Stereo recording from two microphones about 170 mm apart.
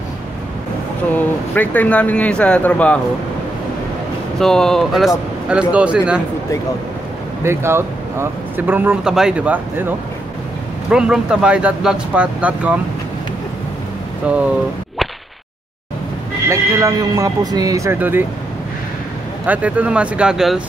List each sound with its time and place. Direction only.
1.1 s speech: 10° left (ahead or behind)
4.4 s speech: 5° left (ahead or behind)
7.4 s speech: 15° right (ahead or behind)
14.3 s speech: 5° right (ahead or behind)
16.4 s speech: 20° right (ahead or behind)
19.4 s speech: 10° right (ahead or behind)